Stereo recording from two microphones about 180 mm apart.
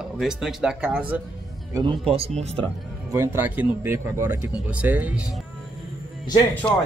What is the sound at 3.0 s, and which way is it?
Speech, 15° right (ahead or behind).